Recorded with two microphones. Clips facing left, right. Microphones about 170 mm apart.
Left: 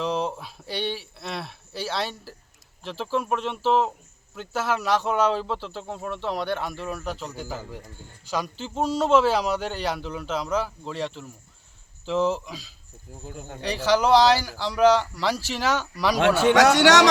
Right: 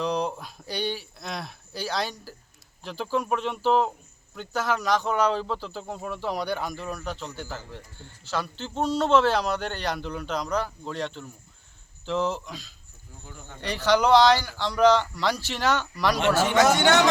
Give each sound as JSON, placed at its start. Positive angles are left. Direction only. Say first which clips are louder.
{"t": 0.0, "sound": "speech", "louder": "even", "side_deg": 5}
{"t": 16.2, "sound": "speech", "louder": "left 4 dB", "side_deg": 65}